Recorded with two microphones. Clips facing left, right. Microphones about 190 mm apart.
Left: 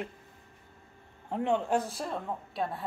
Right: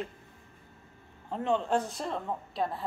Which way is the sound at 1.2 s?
15° left (ahead or behind).